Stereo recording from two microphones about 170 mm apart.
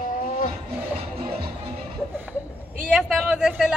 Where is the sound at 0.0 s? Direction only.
50° left (ahead or behind).